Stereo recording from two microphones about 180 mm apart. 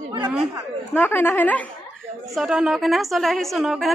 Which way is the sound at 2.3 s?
5° right (ahead or behind).